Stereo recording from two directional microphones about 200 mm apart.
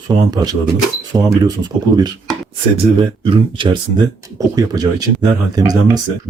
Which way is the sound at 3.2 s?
25° right (ahead or behind).